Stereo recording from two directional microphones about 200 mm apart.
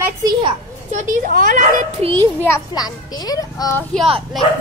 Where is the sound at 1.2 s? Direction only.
45° right (ahead or behind).